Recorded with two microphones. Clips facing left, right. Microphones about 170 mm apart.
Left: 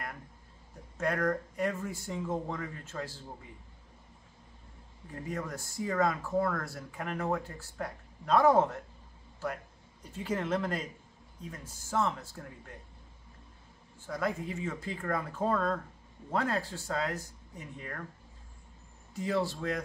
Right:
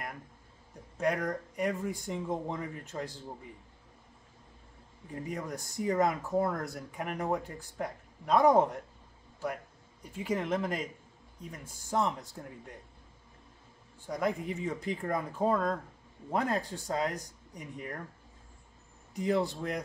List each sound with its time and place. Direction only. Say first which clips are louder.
0.9 s speech: even; 15° right (ahead or behind)
5.1 s speech: even; 15° right (ahead or behind)
10.1 s speech: right 1 dB; 10° right (ahead or behind)
14.0 s speech: right 2 dB; 15° right (ahead or behind)
19.1 s speech: right 2 dB; 15° right (ahead or behind)